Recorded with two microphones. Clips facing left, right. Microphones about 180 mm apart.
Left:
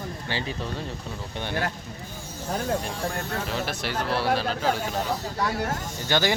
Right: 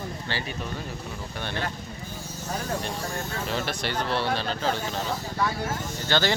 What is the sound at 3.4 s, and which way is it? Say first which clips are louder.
Speech: even; centre (ahead or behind).